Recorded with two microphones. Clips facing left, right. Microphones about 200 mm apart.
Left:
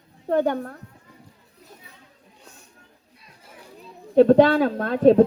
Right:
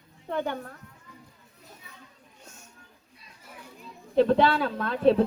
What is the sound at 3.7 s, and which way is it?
Speech, 45° left (ahead or behind).